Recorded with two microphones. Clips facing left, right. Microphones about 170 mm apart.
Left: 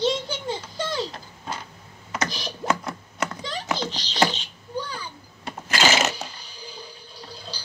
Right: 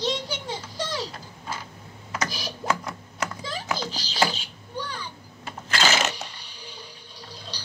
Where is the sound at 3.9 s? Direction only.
5° right (ahead or behind).